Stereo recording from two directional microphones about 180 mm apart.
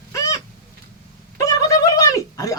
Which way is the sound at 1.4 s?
15° left (ahead or behind).